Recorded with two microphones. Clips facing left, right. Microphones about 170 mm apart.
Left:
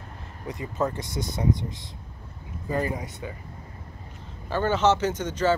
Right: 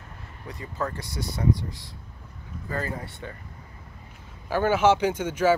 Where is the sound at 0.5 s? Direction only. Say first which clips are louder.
Left 4 dB; 20° left (ahead or behind).